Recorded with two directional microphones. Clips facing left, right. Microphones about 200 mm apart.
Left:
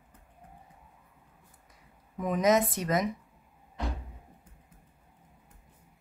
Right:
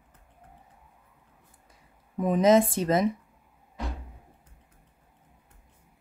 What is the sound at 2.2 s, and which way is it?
Speech, 30° right (ahead or behind).